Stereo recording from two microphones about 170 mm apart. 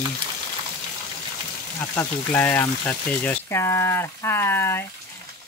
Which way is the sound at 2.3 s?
10° left (ahead or behind).